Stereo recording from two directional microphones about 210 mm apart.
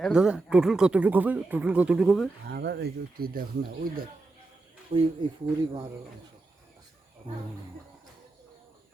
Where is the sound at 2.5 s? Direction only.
50° right (ahead or behind).